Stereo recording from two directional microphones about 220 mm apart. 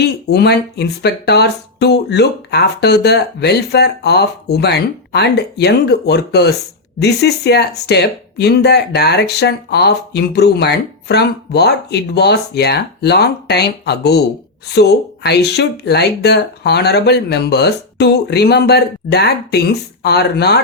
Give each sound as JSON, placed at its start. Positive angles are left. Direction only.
{"t": 0.3, "sound": "speech", "side_deg": 50}